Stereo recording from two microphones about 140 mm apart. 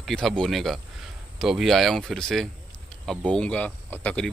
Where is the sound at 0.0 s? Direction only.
5° left (ahead or behind).